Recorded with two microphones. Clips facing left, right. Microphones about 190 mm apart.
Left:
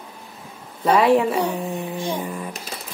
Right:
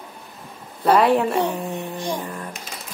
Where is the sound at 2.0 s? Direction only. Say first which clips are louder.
Left 1 dB; 10° left (ahead or behind).